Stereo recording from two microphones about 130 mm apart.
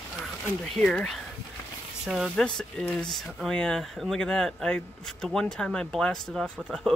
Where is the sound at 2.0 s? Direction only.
5° right (ahead or behind).